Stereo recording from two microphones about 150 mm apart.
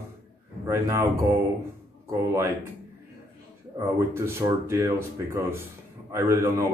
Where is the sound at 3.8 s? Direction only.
20° right (ahead or behind).